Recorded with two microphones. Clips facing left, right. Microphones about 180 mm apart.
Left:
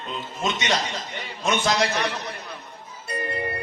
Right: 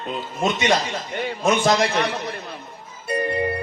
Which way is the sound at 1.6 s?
50° right (ahead or behind).